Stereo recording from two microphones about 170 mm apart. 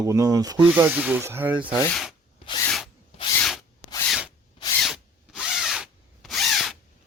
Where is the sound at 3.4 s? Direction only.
Centre (ahead or behind).